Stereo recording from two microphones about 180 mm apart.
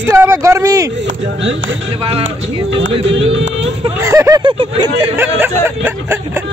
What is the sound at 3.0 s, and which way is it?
Music, 90° right.